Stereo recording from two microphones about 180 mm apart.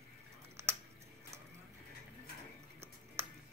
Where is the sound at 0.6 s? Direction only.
15° right (ahead or behind).